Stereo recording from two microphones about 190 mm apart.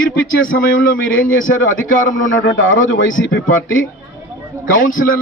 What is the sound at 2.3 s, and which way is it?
Speech, 90° left.